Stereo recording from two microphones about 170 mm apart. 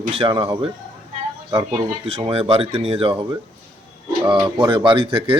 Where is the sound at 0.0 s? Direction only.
35° right (ahead or behind).